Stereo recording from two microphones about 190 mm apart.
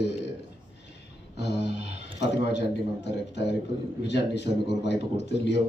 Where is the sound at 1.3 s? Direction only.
65° left (ahead or behind).